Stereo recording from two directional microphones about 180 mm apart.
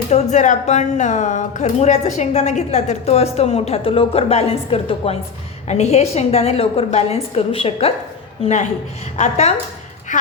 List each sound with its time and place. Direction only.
0.1 s a woman's voice: 40° left (ahead or behind)